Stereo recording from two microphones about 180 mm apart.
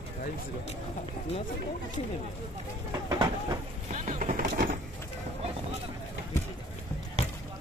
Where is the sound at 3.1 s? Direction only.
20° right (ahead or behind).